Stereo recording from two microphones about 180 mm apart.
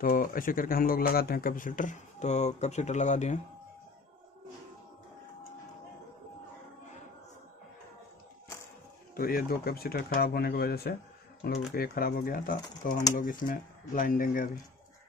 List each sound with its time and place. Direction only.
0.0 s speech: 50° left (ahead or behind)
9.1 s speech: 55° left (ahead or behind)